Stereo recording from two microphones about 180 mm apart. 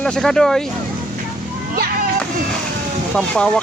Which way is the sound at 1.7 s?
60° right (ahead or behind).